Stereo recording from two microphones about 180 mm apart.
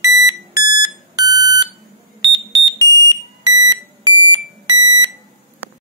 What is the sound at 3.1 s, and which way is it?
Alarm, 20° right (ahead or behind).